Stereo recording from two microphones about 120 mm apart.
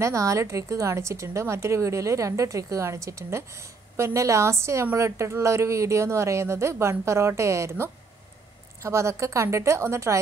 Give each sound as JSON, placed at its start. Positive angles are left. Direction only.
{"t": 0.0, "sound": "a woman's voice", "side_deg": -25}
{"t": 8.8, "sound": "a woman's voice", "side_deg": -25}